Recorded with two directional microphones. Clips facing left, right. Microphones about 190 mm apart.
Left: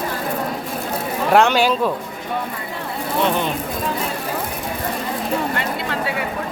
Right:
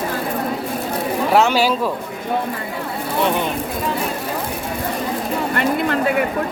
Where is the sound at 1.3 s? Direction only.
5° right (ahead or behind).